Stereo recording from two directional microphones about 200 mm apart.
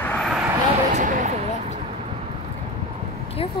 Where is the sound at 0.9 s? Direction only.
35° right (ahead or behind).